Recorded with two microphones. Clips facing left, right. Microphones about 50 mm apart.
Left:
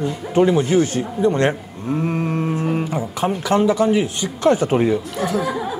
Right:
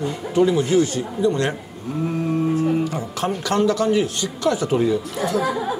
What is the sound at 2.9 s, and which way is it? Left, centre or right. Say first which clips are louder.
Speech: left 3 dB; centre.